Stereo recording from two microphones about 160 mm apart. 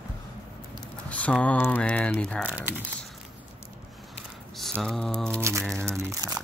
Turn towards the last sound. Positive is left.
turn(degrees=-15)  # may be behind; listen again after turning